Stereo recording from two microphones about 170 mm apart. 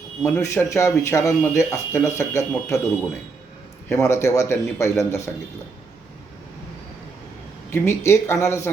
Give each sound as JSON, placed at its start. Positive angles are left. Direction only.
{"t": 0.4, "sound": "speech", "side_deg": 15}
{"t": 3.8, "sound": "speech", "side_deg": 15}
{"t": 7.7, "sound": "speech", "side_deg": 15}